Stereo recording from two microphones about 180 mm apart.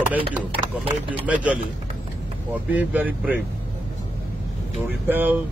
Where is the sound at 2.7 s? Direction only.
10° right (ahead or behind).